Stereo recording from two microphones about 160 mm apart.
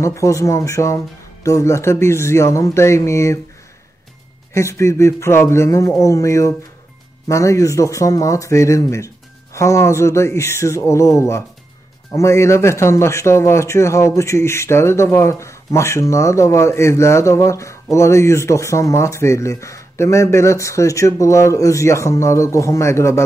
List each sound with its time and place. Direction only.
0.0 s a man's voice: 20° left (ahead or behind)
4.6 s a man's voice: 20° left (ahead or behind)